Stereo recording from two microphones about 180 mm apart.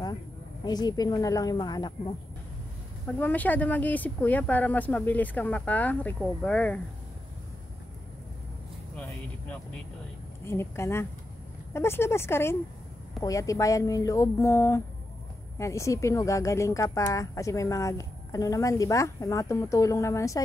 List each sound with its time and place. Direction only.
0.7 s a woman's voice: 20° left (ahead or behind)
3.2 s speech: 10° left (ahead or behind)
10.4 s speech: 15° left (ahead or behind)